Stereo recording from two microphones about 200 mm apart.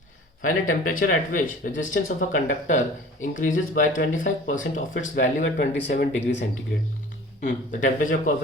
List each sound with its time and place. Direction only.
0.4 s speech: 40° left (ahead or behind)
5.5 s speech: 55° left (ahead or behind)
7.4 s speech: 40° left (ahead or behind)